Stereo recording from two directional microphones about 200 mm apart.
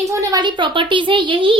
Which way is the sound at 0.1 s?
15° right (ahead or behind).